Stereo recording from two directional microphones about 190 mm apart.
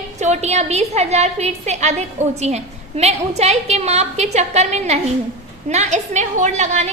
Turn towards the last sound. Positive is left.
turn(degrees=-35)  # may be behind; listen again after turning